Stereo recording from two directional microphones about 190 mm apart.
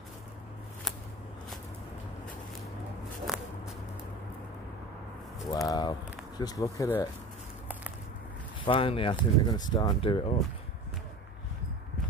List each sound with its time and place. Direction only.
3.3 s walk: centre (ahead or behind)
5.5 s speech: 20° left (ahead or behind)
8.6 s speech: 30° left (ahead or behind)